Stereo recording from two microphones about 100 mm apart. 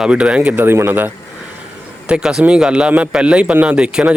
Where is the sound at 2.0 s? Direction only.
10° right (ahead or behind).